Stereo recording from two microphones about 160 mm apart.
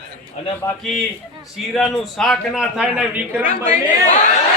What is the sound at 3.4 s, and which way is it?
Speech, 50° left (ahead or behind).